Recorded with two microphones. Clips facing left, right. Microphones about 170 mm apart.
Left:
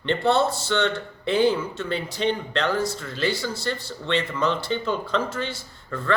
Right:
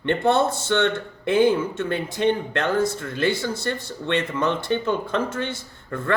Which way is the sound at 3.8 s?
20° right (ahead or behind).